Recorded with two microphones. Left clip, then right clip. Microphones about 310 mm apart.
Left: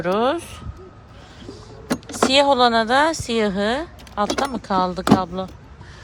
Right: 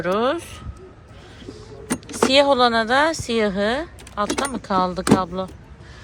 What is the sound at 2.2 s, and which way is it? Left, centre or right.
Speech, centre.